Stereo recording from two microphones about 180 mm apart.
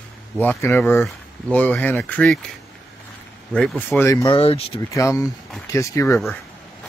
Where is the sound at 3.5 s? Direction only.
5° left (ahead or behind).